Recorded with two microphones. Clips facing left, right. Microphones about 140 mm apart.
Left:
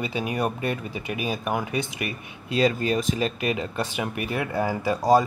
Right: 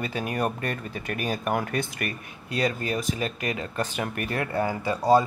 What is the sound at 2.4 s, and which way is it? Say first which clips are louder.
Speech: left 5 dB; 25° left (ahead or behind).